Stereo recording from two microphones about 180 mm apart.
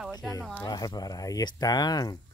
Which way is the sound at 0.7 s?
20° left (ahead or behind).